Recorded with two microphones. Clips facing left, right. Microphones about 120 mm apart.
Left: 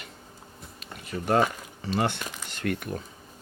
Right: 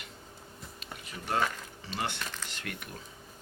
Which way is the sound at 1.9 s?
50° left (ahead or behind).